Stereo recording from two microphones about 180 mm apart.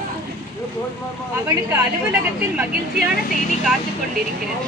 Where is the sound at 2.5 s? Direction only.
5° right (ahead or behind).